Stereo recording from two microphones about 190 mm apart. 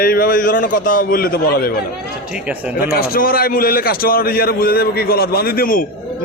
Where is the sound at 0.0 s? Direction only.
50° left (ahead or behind).